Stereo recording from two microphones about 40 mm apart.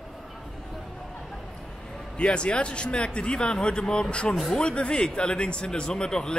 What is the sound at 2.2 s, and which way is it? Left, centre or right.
Speech, left.